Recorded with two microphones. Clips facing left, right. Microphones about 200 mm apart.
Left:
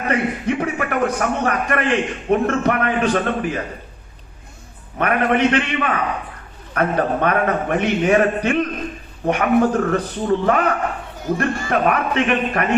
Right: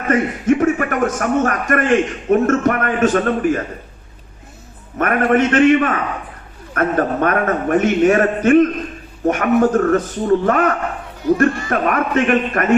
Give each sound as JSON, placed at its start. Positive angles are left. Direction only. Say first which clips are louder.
{"t": 0.1, "sound": "a man's voice", "louder": "right 6 dB", "side_deg": -45}
{"t": 4.9, "sound": "a man's voice", "louder": "right 3 dB", "side_deg": -45}